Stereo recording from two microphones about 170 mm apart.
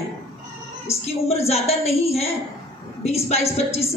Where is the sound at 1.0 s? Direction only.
40° left (ahead or behind).